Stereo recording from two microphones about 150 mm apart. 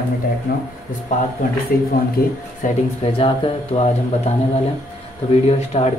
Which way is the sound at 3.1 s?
35° left (ahead or behind).